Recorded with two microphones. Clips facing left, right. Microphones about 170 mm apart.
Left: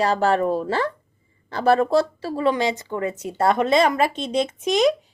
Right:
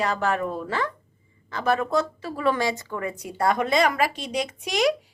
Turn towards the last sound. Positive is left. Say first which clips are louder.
# left 4 dB
turn(degrees=20)  # may be behind; listen again after turning